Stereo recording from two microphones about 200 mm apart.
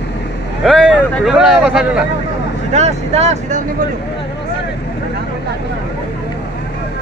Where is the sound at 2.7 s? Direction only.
35° right (ahead or behind).